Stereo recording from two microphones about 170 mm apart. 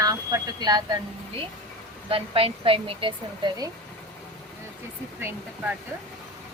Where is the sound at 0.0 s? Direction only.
20° right (ahead or behind).